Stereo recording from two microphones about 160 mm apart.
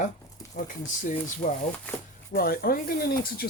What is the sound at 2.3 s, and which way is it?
Speech, 70° left (ahead or behind).